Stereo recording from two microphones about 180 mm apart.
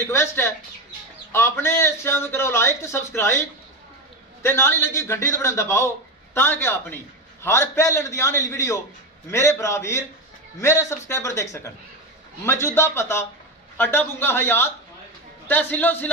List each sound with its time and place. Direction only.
0.0 s speech: 15° left (ahead or behind)
12.4 s speech: 15° left (ahead or behind)